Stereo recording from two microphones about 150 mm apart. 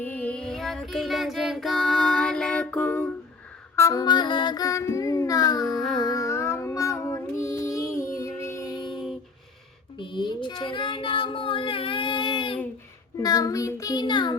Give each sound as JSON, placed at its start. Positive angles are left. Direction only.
{"t": 0.0, "sound": "child singing", "side_deg": 10}
{"t": 3.8, "sound": "music", "side_deg": 20}
{"t": 6.0, "sound": "child singing", "side_deg": 20}
{"t": 8.6, "sound": "music", "side_deg": 0}
{"t": 10.0, "sound": "child singing", "side_deg": 30}